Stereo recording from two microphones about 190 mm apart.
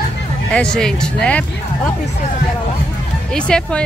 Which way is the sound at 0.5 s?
5° left (ahead or behind).